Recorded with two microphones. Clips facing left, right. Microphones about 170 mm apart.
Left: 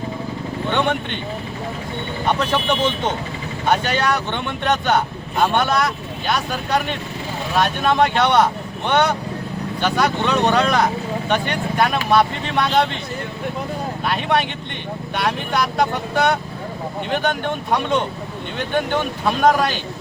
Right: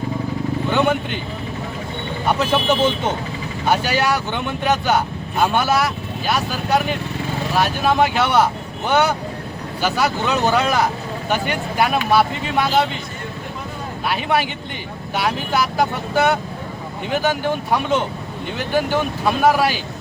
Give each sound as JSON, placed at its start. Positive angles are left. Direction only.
{"t": 0.7, "sound": "speech", "side_deg": -5}
{"t": 2.4, "sound": "speech", "side_deg": -5}
{"t": 14.1, "sound": "speech", "side_deg": -5}